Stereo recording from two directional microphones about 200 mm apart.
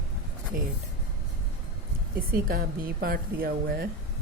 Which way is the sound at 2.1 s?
45° right (ahead or behind).